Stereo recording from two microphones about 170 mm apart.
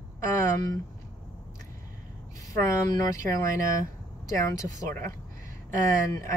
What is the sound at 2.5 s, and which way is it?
Speech, 20° left (ahead or behind).